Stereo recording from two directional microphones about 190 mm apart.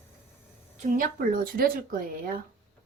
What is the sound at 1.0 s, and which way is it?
Speech, 50° right (ahead or behind).